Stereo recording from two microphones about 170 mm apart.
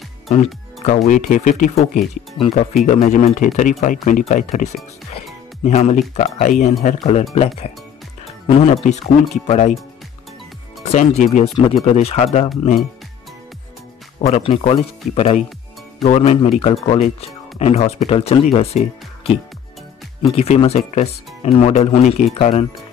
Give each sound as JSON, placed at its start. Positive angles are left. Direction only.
{"t": 0.8, "sound": "speech", "side_deg": 50}
{"t": 2.3, "sound": "speech", "side_deg": 40}
{"t": 8.3, "sound": "music", "side_deg": 35}
{"t": 9.5, "sound": "speech", "side_deg": 40}
{"t": 10.9, "sound": "speech", "side_deg": 40}
{"t": 11.5, "sound": "speech", "side_deg": 30}
{"t": 14.2, "sound": "speech", "side_deg": 35}